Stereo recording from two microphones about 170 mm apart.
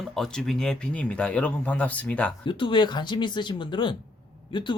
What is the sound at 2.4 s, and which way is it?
Speech, 30° left (ahead or behind).